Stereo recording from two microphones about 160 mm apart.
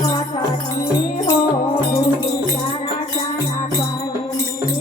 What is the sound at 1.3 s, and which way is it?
Music, 20° left (ahead or behind).